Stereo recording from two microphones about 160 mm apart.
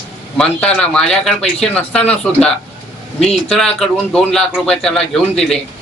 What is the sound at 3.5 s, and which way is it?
Speech, 5° left (ahead or behind).